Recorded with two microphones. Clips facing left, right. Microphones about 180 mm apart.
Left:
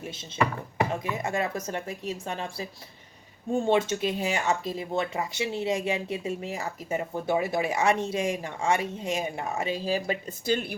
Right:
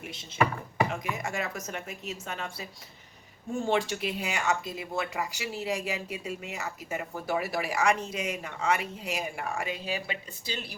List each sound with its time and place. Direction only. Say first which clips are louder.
0.9 s speech: left 3 dB; 25° left (ahead or behind)
3.7 s speech: left 3 dB; 25° left (ahead or behind)
10.4 s speech: left 12 dB; 55° left (ahead or behind)